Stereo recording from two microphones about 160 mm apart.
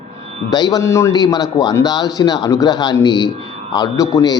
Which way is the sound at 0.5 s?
25° left (ahead or behind).